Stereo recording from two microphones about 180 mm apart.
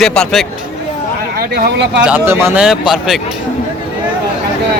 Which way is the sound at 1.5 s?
70° right (ahead or behind).